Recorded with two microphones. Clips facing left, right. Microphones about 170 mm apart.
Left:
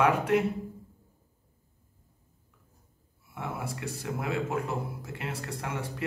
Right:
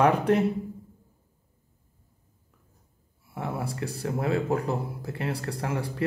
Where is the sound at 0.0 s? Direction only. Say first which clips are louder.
Right 3 dB; 35° right (ahead or behind).